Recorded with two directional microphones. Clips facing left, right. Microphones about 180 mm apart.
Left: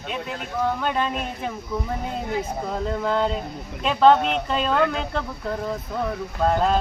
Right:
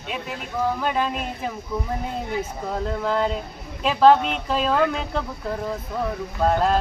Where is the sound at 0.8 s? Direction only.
5° right (ahead or behind).